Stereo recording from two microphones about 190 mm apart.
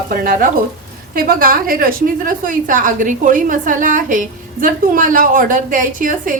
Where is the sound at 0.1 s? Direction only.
50° right (ahead or behind).